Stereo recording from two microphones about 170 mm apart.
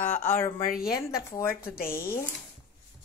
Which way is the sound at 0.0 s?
10° left (ahead or behind).